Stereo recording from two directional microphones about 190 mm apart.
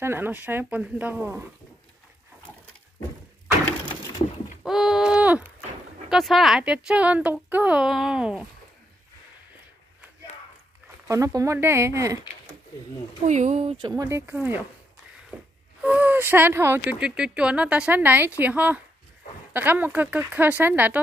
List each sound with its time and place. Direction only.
0.0 s speech: 10° right (ahead or behind)
4.6 s clip-clop: centre (ahead or behind)
6.0 s speech: centre (ahead or behind)
11.1 s speech: 15° right (ahead or behind)
13.3 s speech: 35° right (ahead or behind)
13.7 s speech: 20° right (ahead or behind)
15.3 s a sound: 10° right (ahead or behind)
15.8 s speech: 10° right (ahead or behind)